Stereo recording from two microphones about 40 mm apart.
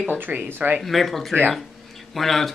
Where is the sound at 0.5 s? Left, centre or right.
Right.